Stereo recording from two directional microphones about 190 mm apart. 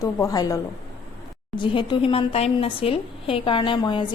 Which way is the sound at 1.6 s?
25° left (ahead or behind).